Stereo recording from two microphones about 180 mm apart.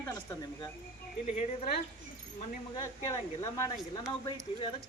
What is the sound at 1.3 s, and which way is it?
Speech, 40° left (ahead or behind).